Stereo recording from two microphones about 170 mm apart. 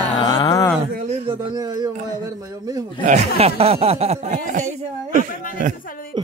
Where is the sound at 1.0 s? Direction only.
35° right (ahead or behind).